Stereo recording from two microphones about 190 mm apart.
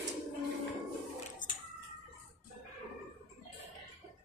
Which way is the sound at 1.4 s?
45° left (ahead or behind).